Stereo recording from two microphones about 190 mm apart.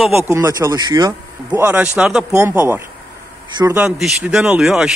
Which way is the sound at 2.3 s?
15° right (ahead or behind).